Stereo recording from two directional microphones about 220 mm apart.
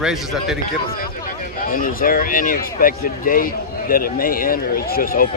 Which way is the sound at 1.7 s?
40° left (ahead or behind).